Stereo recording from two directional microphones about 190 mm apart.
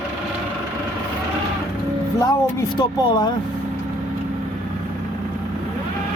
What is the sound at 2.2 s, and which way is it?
Speech, 20° left (ahead or behind).